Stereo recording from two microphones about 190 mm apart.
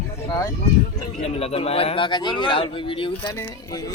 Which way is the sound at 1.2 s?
35° left (ahead or behind).